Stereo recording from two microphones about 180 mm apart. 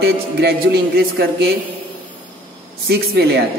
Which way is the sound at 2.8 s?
60° right (ahead or behind).